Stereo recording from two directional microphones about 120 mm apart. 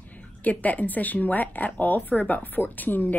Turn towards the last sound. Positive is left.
turn(degrees=15)  # may be behind; listen again after turning